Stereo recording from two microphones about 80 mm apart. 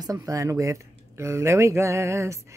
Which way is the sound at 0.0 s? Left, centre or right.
Right.